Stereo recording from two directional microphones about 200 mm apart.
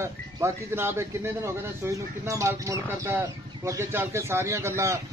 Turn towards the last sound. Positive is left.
turn(degrees=-15)  # may be behind; listen again after turning